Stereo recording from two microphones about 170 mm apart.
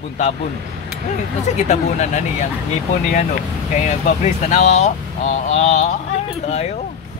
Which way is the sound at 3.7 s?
45° left (ahead or behind).